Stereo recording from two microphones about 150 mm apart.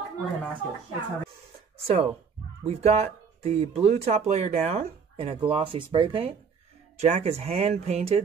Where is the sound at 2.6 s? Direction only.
45° right (ahead or behind).